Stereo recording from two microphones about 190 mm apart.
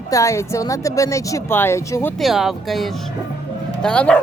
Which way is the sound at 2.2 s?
Centre (ahead or behind).